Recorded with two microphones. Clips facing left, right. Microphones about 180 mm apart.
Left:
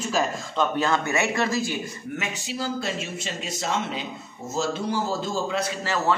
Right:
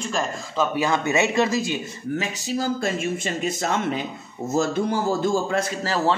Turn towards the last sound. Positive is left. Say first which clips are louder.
# right 5 dB
turn(degrees=-50)  # may be behind; listen again after turning